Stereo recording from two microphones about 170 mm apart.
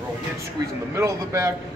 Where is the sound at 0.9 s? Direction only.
15° right (ahead or behind).